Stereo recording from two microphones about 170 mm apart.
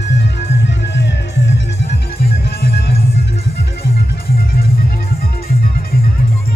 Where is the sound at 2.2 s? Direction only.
65° left (ahead or behind).